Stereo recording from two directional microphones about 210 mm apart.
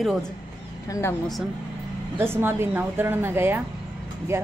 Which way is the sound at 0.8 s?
15° left (ahead or behind).